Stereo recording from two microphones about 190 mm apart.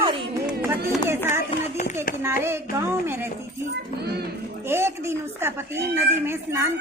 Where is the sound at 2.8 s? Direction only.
10° right (ahead or behind).